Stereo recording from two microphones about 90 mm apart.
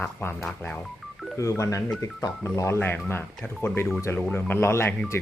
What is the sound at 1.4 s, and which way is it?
Speech, 35° left (ahead or behind).